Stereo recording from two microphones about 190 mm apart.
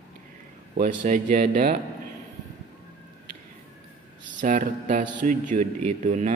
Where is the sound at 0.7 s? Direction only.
45° right (ahead or behind).